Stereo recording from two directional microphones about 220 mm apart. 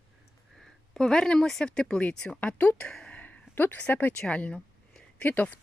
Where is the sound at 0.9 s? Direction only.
Centre (ahead or behind).